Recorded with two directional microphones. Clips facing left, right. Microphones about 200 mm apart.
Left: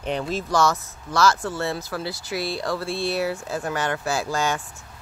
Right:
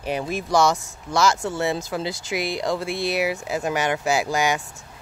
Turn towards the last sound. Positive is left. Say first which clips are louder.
# right 3 dB
turn(degrees=-15)  # may be behind; listen again after turning